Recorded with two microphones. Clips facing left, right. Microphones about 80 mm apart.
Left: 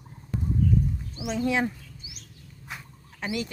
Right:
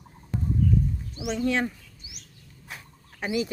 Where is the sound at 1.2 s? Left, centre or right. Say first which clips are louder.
Even; centre.